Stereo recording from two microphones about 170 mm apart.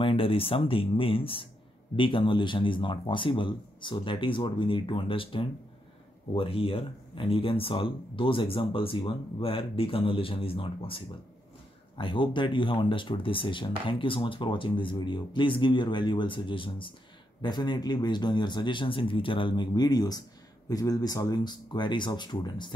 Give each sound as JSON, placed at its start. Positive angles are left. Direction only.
{"t": 0.0, "sound": "speech", "side_deg": 30}